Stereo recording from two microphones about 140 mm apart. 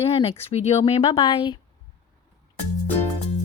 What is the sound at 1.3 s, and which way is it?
Speech, 35° left (ahead or behind).